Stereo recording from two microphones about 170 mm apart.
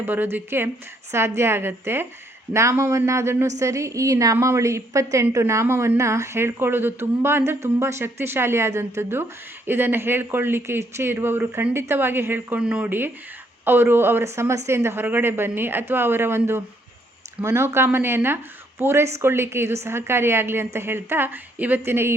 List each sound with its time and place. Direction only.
0.0 s a woman's voice: 10° right (ahead or behind)